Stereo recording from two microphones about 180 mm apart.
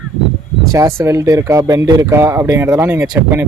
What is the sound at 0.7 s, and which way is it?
Speech, 15° right (ahead or behind).